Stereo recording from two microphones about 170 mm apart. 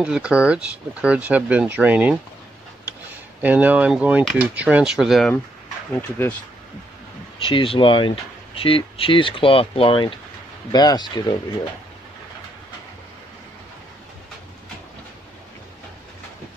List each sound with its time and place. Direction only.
0.0 s speech: 5° right (ahead or behind)
3.3 s speech: 10° right (ahead or behind)
5.9 s speech: 10° left (ahead or behind)
7.4 s speech: 30° left (ahead or behind)